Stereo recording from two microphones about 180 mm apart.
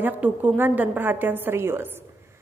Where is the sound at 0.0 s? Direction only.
10° right (ahead or behind).